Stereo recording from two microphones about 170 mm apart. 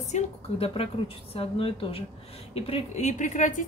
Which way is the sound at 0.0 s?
40° left (ahead or behind).